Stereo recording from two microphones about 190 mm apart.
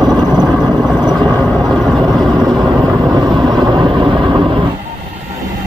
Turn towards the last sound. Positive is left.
turn(degrees=-15)  # may be behind; listen again after turning